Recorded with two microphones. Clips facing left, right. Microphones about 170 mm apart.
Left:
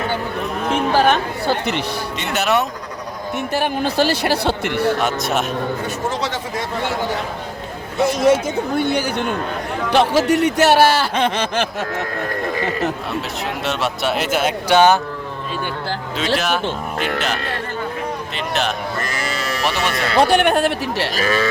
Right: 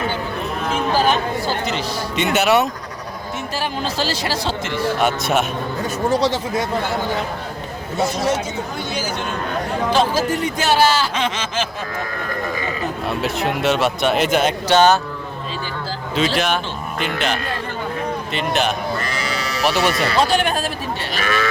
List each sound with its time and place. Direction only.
0.7 s chatter: 65° left (ahead or behind)
2.1 s speech: centre (ahead or behind)
3.5 s speech: 60° left (ahead or behind)
5.0 s speech: centre (ahead or behind)
8.3 s speech: 60° left (ahead or behind)
12.5 s speech: 80° left
13.2 s speech: centre (ahead or behind)
16.1 s speech: centre (ahead or behind)
18.3 s speech: centre (ahead or behind)
19.0 s sheep: 50° left (ahead or behind)
19.6 s speech: centre (ahead or behind)
20.1 s speech: 60° left (ahead or behind)
21.1 s speech: 35° left (ahead or behind)